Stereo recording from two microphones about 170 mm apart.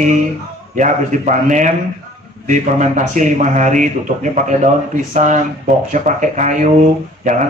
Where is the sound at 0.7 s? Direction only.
45° right (ahead or behind).